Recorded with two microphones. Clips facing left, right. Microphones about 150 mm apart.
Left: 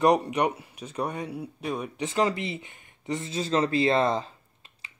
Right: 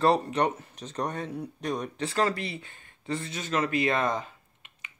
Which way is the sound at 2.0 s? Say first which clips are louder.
Left 2 dB; 20° left (ahead or behind).